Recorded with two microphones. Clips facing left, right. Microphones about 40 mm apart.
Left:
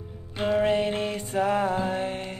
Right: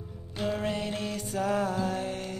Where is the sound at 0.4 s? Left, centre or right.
Left.